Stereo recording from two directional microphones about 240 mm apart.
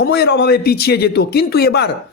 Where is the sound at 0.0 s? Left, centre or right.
Left.